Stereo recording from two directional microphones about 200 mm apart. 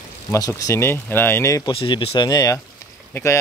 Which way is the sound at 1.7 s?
25° left (ahead or behind).